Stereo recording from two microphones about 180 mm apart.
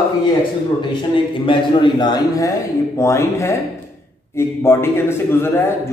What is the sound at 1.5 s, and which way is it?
A man's voice, 25° left (ahead or behind).